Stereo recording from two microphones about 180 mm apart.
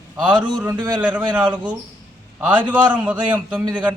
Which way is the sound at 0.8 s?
25° right (ahead or behind).